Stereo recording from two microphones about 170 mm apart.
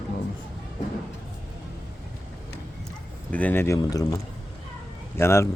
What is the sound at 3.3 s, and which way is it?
Speech, 10° left (ahead or behind).